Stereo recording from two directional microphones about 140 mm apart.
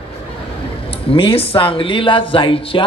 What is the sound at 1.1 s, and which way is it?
A man's voice, 40° left (ahead or behind).